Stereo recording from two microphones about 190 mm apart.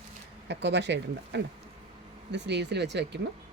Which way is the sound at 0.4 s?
65° right (ahead or behind).